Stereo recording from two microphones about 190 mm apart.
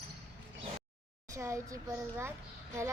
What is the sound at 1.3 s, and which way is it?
A child's voice, 15° right (ahead or behind).